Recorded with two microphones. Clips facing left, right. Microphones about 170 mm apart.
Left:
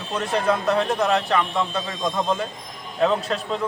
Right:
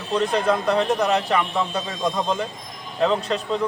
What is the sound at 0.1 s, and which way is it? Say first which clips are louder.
A man's voice: right 2 dB; 5° left (ahead or behind).